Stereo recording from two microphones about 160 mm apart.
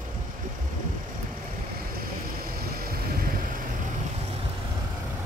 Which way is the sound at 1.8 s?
70° right (ahead or behind).